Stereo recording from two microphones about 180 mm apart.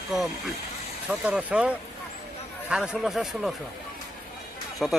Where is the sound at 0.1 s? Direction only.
Centre (ahead or behind).